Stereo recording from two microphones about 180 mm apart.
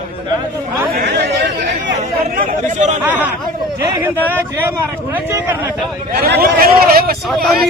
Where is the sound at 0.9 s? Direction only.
65° right (ahead or behind).